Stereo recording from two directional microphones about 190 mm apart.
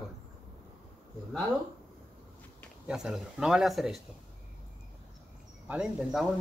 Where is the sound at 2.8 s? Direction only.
Centre (ahead or behind).